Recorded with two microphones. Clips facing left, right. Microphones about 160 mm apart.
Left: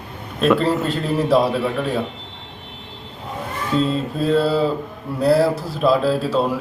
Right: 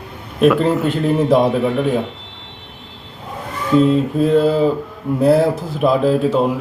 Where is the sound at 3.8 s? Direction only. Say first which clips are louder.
Right 6 dB; 15° right (ahead or behind).